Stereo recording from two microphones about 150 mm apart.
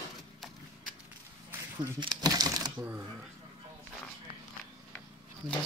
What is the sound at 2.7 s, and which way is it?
Speech, 10° right (ahead or behind).